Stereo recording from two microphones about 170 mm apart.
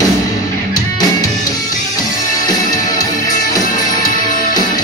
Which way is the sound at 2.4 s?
20° left (ahead or behind).